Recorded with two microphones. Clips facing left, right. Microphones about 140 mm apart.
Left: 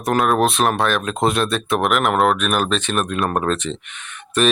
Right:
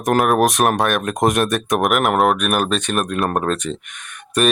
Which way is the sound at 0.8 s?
55° right (ahead or behind).